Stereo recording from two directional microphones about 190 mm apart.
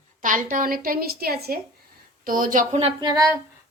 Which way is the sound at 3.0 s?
20° right (ahead or behind).